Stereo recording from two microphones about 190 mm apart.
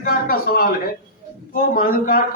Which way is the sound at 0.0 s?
50° left (ahead or behind).